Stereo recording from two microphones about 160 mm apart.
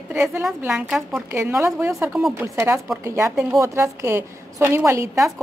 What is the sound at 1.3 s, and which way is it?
A woman's voice, 15° right (ahead or behind).